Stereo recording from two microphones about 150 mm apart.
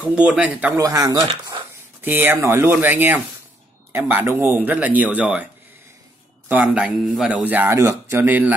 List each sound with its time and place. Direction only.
0.0 s speech: 5° right (ahead or behind)
0.7 s speech: 25° right (ahead or behind)
2.0 s speech: 15° right (ahead or behind)
6.5 s speech: 5° right (ahead or behind)